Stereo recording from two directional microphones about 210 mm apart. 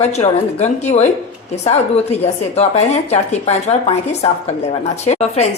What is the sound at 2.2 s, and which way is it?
A woman's voice, 30° left (ahead or behind).